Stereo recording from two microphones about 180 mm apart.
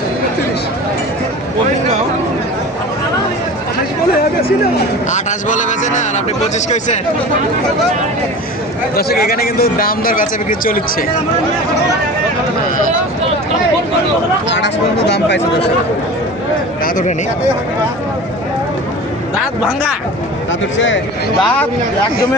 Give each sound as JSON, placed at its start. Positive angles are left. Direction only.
{"t": 5.1, "sound": "speech", "side_deg": 45}
{"t": 9.0, "sound": "speech", "side_deg": 60}
{"t": 15.0, "sound": "speech", "side_deg": 70}
{"t": 16.8, "sound": "speech", "side_deg": 45}
{"t": 20.5, "sound": "speech", "side_deg": 90}